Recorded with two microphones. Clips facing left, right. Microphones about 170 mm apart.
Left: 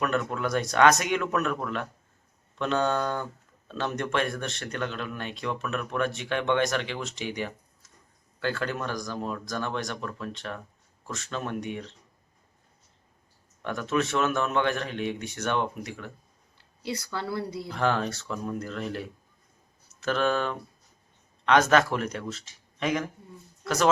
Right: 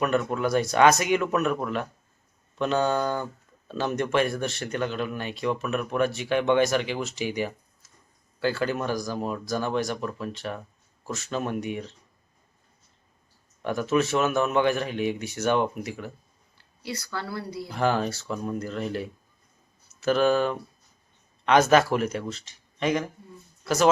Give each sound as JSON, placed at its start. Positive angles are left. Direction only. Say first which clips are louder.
{"t": 0.0, "sound": "speech", "louder": "right 3 dB", "side_deg": -5}
{"t": 13.6, "sound": "speech", "louder": "right 4 dB", "side_deg": -5}
{"t": 16.8, "sound": "a woman's voice", "louder": "left 1 dB", "side_deg": 25}
{"t": 17.7, "sound": "speech", "louder": "right 3 dB", "side_deg": -5}